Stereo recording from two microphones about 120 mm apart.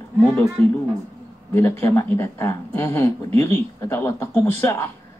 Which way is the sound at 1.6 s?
20° left (ahead or behind).